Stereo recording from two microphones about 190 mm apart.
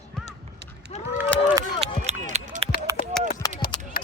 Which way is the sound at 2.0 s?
35° right (ahead or behind).